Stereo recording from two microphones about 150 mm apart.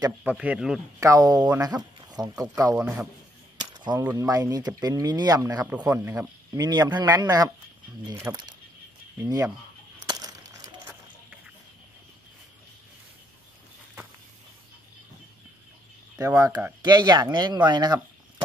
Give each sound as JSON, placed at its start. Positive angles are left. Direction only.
{"t": 0.2, "sound": "speech", "side_deg": -10}
{"t": 1.0, "sound": "speech", "side_deg": -25}
{"t": 2.7, "sound": "speech", "side_deg": -10}
{"t": 3.7, "sound": "a sound", "side_deg": -30}
{"t": 4.0, "sound": "speech", "side_deg": -15}
{"t": 10.0, "sound": "a sound", "side_deg": -25}
{"t": 16.2, "sound": "speech", "side_deg": -20}